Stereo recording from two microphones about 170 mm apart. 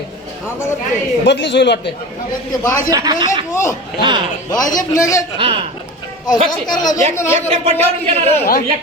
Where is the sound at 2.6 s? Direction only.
20° left (ahead or behind).